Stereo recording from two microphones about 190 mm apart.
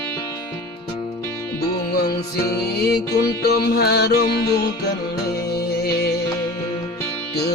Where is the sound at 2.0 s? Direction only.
55° left (ahead or behind).